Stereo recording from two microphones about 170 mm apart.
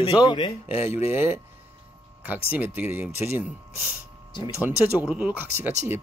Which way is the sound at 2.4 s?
10° right (ahead or behind).